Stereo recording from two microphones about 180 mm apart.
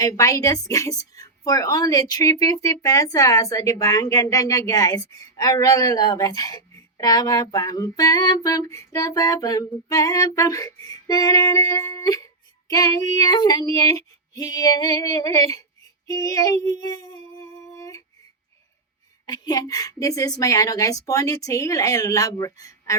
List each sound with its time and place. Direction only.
0.0 s a woman's voice: 20° left (ahead or behind)
16.0 s a sound: 20° left (ahead or behind)
19.2 s a woman's voice: 20° left (ahead or behind)